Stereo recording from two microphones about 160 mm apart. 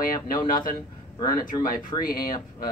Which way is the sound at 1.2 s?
25° left (ahead or behind).